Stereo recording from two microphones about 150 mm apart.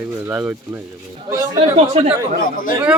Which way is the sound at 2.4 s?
65° left (ahead or behind).